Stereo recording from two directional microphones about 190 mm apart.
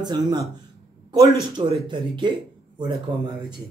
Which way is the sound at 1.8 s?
25° right (ahead or behind).